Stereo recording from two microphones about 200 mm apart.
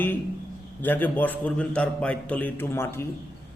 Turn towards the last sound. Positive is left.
turn(degrees=10)  # may be behind; listen again after turning